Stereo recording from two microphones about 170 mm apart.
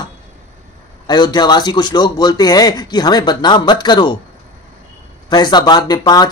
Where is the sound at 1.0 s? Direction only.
25° left (ahead or behind).